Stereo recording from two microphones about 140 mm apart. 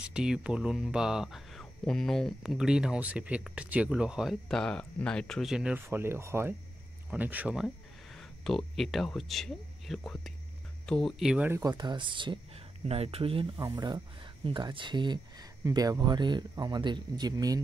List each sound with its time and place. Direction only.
0.1 s speech: 5° right (ahead or behind)
5.8 s speech: 15° right (ahead or behind)
11.6 s speech: 30° right (ahead or behind)
13.6 s speech: 25° right (ahead or behind)